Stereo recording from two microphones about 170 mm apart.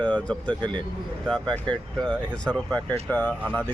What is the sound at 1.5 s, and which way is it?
Speech, 5° left (ahead or behind).